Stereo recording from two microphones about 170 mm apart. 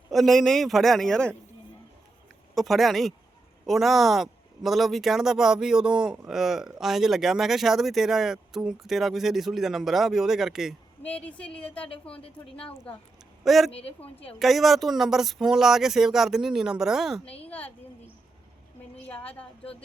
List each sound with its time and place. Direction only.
0.1 s speech: centre (ahead or behind)
2.6 s speech: centre (ahead or behind)
11.0 s a woman's voice: 10° left (ahead or behind)
12.2 s a woman's voice: 35° left (ahead or behind)
12.7 s a woman's voice: 10° left (ahead or behind)
13.4 s speech: centre (ahead or behind)
13.7 s a woman's voice: 35° left (ahead or behind)
14.3 s speech: centre (ahead or behind)
17.2 s a woman's voice: 35° left (ahead or behind)
19.0 s a woman's voice: 10° left (ahead or behind)